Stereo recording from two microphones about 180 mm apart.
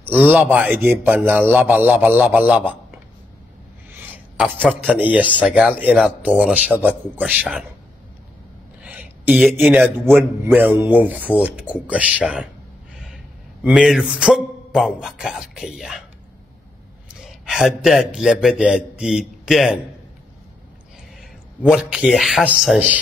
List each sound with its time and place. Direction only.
0.3 s a man's voice: 10° right (ahead or behind)
3.9 s a sound: 10° right (ahead or behind)
4.6 s a man's voice: 5° right (ahead or behind)
8.8 s a sound: 10° right (ahead or behind)
9.4 s speech: centre (ahead or behind)
10.4 s a man's voice: 10° right (ahead or behind)
12.9 s gasp: 5° right (ahead or behind)
13.7 s speech: 5° right (ahead or behind)
17.1 s a man's voice: centre (ahead or behind)
21.2 s a man's voice: 5° right (ahead or behind)